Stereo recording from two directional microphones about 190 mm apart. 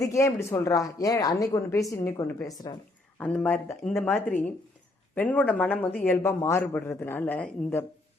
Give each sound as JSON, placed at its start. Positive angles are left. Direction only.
{"t": 0.0, "sound": "speech", "side_deg": 15}
{"t": 3.2, "sound": "speech", "side_deg": 5}
{"t": 5.1, "sound": "speech", "side_deg": 10}